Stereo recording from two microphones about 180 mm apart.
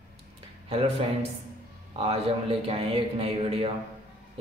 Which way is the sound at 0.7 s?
35° right (ahead or behind).